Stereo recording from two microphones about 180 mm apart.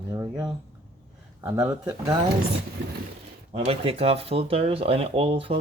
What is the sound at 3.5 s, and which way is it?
Speech, 35° right (ahead or behind).